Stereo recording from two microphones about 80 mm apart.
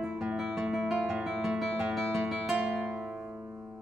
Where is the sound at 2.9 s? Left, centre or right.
Centre.